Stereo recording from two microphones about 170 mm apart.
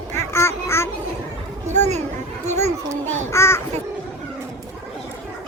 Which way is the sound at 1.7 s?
40° right (ahead or behind).